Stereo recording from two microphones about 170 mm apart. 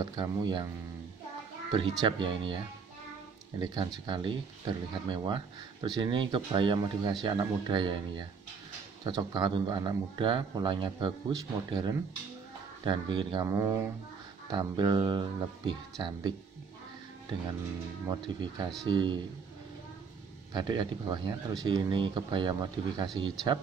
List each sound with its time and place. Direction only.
0.0 s speech: 25° right (ahead or behind)
1.7 s speech: 25° right (ahead or behind)
18.1 s speech: 25° right (ahead or behind)
20.5 s speech: 25° right (ahead or behind)